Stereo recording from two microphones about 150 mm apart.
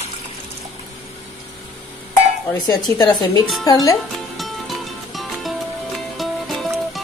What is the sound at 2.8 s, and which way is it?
Speech, 25° left (ahead or behind).